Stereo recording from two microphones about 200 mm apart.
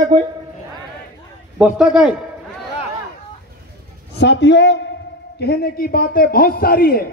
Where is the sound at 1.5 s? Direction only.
5° right (ahead or behind).